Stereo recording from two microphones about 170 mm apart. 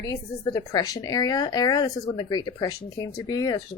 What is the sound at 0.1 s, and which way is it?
A woman's voice, 20° left (ahead or behind).